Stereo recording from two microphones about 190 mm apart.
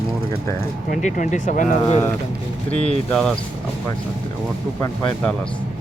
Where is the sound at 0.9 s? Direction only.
40° left (ahead or behind).